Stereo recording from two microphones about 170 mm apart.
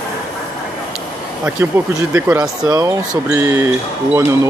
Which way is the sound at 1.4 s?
15° right (ahead or behind).